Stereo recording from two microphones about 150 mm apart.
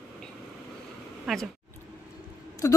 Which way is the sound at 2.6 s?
20° left (ahead or behind).